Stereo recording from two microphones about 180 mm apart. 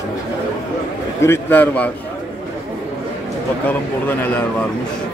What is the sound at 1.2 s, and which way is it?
Speech, 10° left (ahead or behind).